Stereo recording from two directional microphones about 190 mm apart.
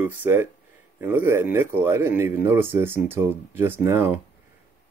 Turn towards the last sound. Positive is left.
turn(degrees=-10)  # may be behind; listen again after turning